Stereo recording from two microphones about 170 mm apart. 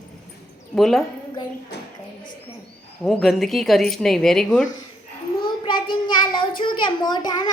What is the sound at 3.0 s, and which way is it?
Speech, centre (ahead or behind).